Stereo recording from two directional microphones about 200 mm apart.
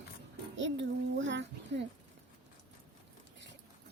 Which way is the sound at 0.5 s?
65° right (ahead or behind).